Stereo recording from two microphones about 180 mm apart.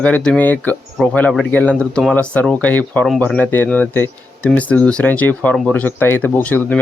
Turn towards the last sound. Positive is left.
turn(degrees=10)  # may be behind; listen again after turning